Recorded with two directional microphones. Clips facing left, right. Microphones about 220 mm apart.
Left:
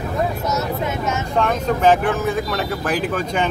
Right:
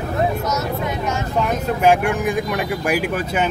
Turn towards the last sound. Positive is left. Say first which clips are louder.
# even
turn(degrees=-10)  # may be behind; listen again after turning